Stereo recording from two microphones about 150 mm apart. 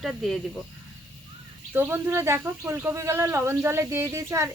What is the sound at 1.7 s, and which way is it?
A woman's voice, 15° right (ahead or behind).